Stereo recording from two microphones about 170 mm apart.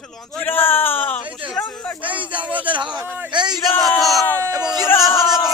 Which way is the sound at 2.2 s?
30° right (ahead or behind).